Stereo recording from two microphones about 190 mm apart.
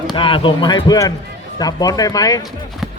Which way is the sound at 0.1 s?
25° left (ahead or behind).